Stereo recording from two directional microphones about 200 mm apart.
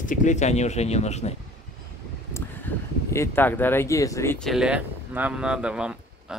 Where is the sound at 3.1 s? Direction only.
10° left (ahead or behind).